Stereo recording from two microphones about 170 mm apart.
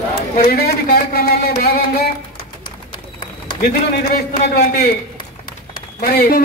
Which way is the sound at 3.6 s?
65° left (ahead or behind).